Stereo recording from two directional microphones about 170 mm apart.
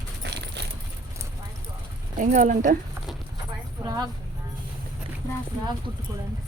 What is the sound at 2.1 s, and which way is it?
Speech, 50° right (ahead or behind).